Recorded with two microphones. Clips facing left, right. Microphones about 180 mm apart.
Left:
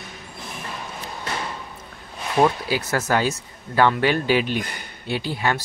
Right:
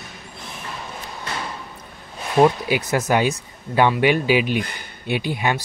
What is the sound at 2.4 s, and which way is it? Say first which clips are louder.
Speech: right 3 dB; 15° right (ahead or behind).